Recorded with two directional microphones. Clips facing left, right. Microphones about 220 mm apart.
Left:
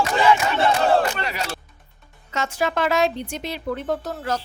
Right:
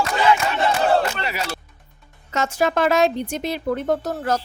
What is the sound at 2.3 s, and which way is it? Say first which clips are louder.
A woman's voice: right 3 dB; 45° right (ahead or behind).